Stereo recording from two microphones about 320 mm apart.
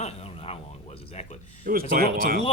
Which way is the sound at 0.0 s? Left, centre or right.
Centre.